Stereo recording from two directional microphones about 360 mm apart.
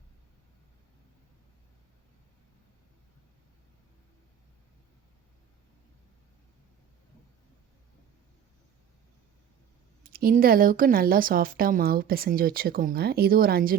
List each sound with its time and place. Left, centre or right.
10.0 s speech: right